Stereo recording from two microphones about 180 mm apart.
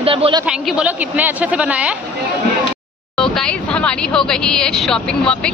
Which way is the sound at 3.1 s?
5° left (ahead or behind).